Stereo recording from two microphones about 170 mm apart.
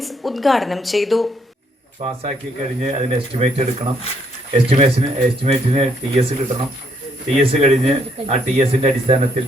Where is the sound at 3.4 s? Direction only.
45° right (ahead or behind).